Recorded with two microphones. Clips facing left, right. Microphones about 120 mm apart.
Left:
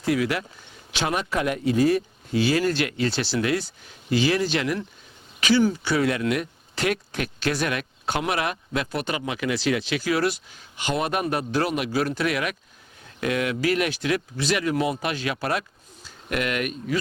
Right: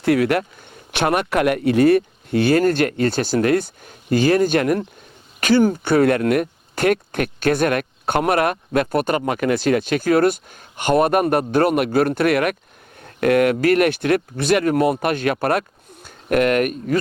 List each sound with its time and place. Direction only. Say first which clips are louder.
0.0 s speech: right 7 dB; 60° right (ahead or behind)